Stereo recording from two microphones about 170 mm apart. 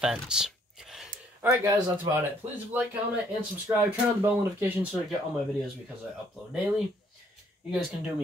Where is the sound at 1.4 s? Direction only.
20° right (ahead or behind).